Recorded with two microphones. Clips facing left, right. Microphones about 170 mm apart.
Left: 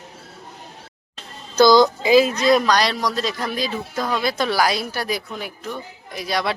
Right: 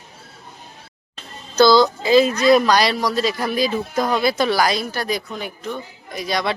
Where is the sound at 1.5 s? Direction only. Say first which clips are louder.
Even; 15° left (ahead or behind).